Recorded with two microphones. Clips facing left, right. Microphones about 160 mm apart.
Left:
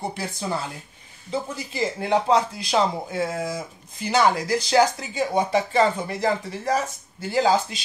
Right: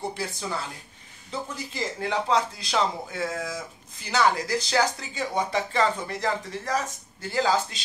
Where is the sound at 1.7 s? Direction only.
10° left (ahead or behind).